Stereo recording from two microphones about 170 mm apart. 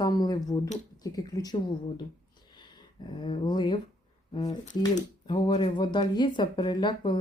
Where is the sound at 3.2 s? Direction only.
30° left (ahead or behind).